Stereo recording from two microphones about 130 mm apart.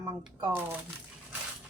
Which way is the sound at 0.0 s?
25° right (ahead or behind).